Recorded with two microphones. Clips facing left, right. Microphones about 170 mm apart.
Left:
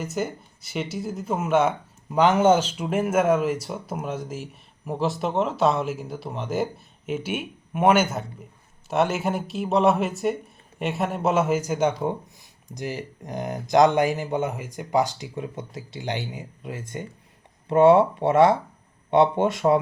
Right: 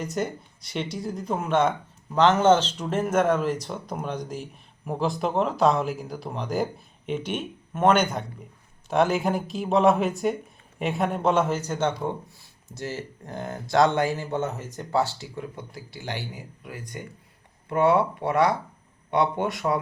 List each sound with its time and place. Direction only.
0.0 s speech: 5° left (ahead or behind); by 19.8 s 25° left (ahead or behind)